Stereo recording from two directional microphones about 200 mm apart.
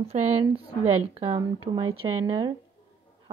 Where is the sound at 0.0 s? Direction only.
30° right (ahead or behind).